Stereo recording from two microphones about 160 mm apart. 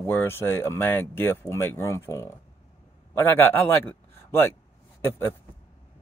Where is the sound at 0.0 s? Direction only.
15° left (ahead or behind).